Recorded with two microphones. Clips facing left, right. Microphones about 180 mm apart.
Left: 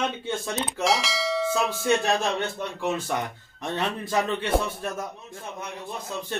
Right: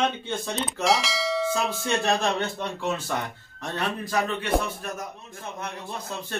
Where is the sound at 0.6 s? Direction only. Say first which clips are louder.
Right 2 dB; centre (ahead or behind).